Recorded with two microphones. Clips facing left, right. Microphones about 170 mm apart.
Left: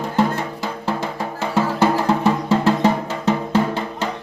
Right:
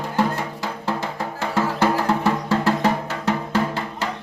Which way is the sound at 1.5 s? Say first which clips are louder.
Left 3 dB; 20° left (ahead or behind).